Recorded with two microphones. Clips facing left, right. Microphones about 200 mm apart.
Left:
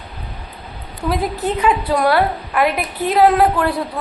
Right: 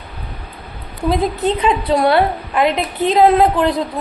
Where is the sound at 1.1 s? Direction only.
25° right (ahead or behind).